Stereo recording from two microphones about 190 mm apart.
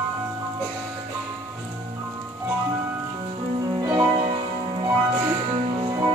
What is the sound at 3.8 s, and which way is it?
Music, 20° right (ahead or behind).